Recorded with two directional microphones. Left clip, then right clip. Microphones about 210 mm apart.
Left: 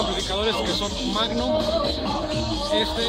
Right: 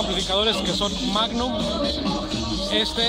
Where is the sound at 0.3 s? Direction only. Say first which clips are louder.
Right 4 dB; 10° right (ahead or behind).